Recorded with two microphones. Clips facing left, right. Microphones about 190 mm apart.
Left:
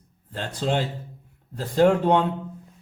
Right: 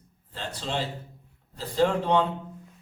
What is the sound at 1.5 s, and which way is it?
Speech, 50° left (ahead or behind).